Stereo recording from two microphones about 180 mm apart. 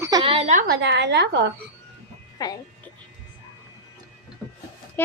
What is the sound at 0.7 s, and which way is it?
Speech, 75° right (ahead or behind).